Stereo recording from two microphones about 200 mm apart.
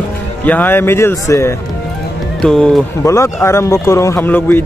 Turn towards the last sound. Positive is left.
turn(degrees=10)  # may be behind; listen again after turning